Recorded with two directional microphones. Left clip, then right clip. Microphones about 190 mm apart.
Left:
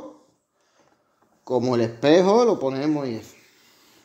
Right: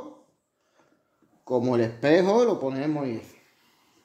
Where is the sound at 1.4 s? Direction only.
30° left (ahead or behind).